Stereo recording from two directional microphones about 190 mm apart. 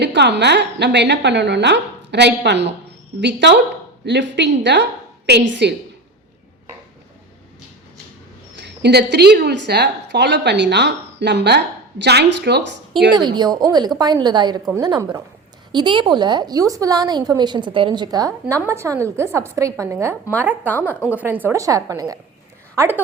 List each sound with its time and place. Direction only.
0.0 s a woman's voice: 65° right (ahead or behind)
8.5 s a woman's voice: 65° right (ahead or behind)
13.1 s a woman's voice: 20° right (ahead or behind)